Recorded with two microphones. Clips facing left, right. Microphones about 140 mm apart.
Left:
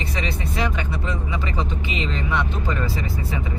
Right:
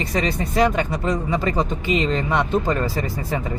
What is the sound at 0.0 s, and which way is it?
Speech, 40° right (ahead or behind).